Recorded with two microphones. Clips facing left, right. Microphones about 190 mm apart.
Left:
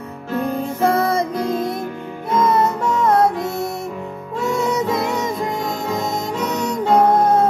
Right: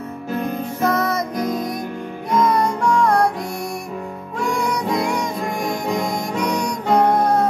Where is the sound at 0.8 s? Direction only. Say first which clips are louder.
Left 3 dB; 30° left (ahead or behind).